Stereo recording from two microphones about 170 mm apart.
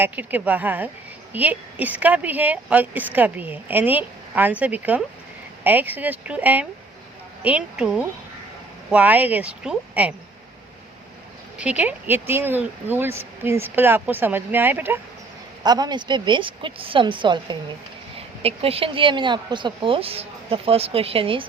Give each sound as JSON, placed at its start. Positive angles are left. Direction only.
{"t": 0.0, "sound": "speech", "side_deg": -10}
{"t": 11.5, "sound": "speech", "side_deg": -10}
{"t": 15.6, "sound": "a woman's voice", "side_deg": -25}